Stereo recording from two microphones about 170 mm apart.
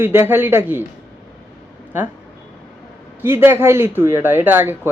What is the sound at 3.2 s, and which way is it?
Speech, 15° right (ahead or behind).